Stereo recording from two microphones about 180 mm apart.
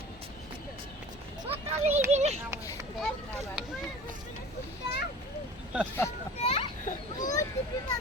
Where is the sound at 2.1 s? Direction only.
35° right (ahead or behind).